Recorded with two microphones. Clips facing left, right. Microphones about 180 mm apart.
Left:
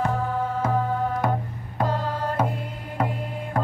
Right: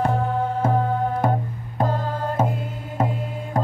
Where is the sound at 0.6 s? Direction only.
25° right (ahead or behind).